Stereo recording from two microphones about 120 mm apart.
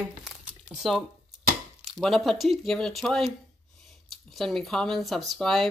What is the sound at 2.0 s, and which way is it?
Speech, centre (ahead or behind).